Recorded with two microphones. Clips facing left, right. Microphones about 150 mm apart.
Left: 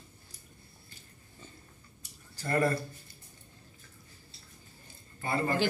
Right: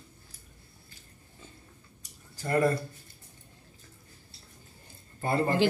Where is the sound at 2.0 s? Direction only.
15° right (ahead or behind).